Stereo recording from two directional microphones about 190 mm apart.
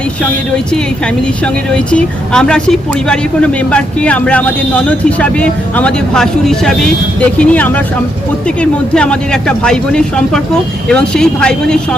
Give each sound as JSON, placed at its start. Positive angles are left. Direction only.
{"t": 0.2, "sound": "a woman's voice", "side_deg": 5}
{"t": 9.0, "sound": "speech", "side_deg": 5}